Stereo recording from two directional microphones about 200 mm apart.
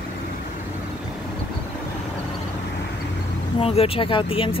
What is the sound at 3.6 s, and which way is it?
Speech, 30° left (ahead or behind).